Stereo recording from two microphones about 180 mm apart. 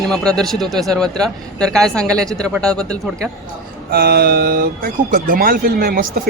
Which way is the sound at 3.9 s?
55° right (ahead or behind).